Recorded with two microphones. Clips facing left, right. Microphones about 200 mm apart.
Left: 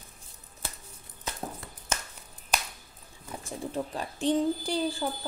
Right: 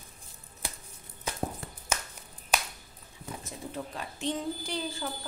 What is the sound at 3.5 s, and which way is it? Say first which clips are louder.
A woman's voice: left 7 dB; 35° left (ahead or behind).